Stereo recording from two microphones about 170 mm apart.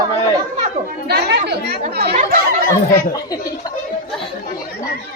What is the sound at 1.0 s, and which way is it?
Speech, 75° right (ahead or behind).